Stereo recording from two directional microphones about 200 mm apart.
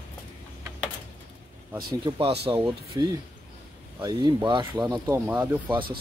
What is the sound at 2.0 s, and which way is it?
Speech, 25° right (ahead or behind).